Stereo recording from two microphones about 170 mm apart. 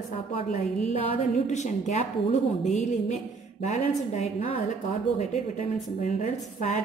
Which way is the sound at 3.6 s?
40° left (ahead or behind).